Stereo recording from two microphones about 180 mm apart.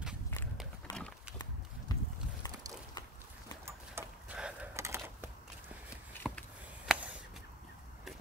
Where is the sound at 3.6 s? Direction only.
10° right (ahead or behind).